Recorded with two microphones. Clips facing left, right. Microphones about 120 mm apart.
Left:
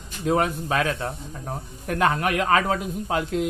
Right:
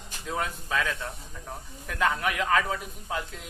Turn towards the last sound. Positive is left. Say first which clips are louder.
# left 10 dB
turn(degrees=80)